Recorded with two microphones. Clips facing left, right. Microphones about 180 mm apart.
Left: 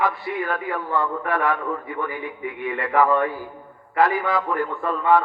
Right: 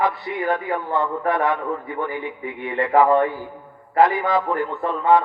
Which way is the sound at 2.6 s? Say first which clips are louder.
Right 5 dB; 25° right (ahead or behind).